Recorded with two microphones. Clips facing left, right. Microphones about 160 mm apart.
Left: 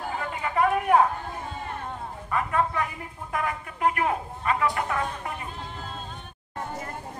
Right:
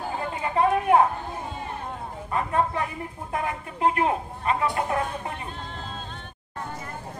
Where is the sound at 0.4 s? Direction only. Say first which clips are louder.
Right 1 dB; 25° right (ahead or behind).